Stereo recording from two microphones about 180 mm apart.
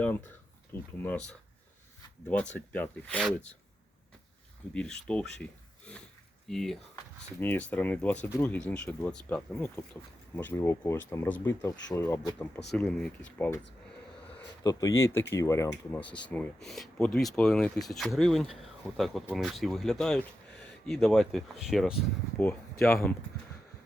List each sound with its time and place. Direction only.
0.0 s speech: 10° left (ahead or behind)
2.2 s speech: 10° left (ahead or behind)
4.7 s speech: 5° left (ahead or behind)
14.6 s speech: 20° left (ahead or behind); by 23.1 s 5° left (ahead or behind)